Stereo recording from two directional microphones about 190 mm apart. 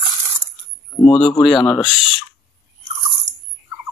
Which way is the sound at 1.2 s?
Centre (ahead or behind).